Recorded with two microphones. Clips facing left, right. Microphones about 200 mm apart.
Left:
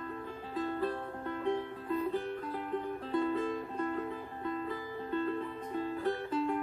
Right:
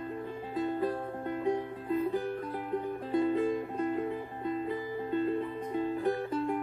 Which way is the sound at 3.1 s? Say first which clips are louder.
Right 4 dB; 15° right (ahead or behind).